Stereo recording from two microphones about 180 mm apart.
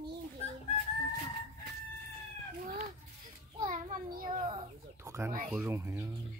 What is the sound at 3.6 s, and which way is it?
Child singing, 50° right (ahead or behind).